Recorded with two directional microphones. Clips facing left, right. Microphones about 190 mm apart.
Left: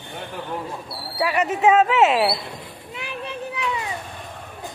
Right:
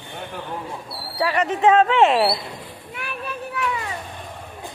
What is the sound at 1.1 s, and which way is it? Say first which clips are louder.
A woman's voice: even; 10° left (ahead or behind).